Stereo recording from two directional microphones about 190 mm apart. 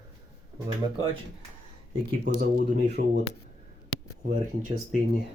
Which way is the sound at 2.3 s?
50° right (ahead or behind).